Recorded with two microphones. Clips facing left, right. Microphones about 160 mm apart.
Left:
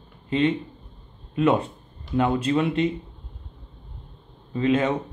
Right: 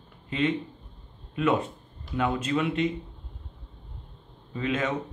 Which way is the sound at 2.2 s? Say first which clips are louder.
Left 5 dB; 35° left (ahead or behind).